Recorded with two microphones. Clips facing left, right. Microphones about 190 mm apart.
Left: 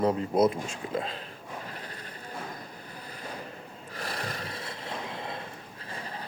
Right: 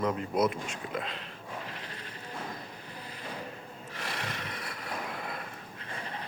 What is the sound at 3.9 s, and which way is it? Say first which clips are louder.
Snort: left 3 dB; 35° left (ahead or behind).